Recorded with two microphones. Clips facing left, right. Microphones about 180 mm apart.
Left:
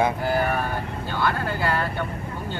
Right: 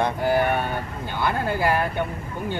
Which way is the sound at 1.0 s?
15° right (ahead or behind).